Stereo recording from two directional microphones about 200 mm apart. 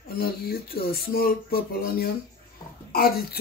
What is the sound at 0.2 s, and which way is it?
Speech, 50° left (ahead or behind).